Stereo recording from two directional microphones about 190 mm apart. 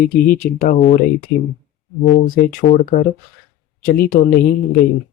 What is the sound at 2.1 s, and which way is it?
Speech, 45° left (ahead or behind).